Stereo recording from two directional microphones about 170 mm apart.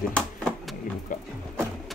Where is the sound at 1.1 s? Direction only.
50° left (ahead or behind).